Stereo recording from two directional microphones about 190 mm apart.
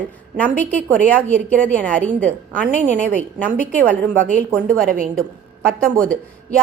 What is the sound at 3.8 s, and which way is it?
A woman's voice, 45° right (ahead or behind).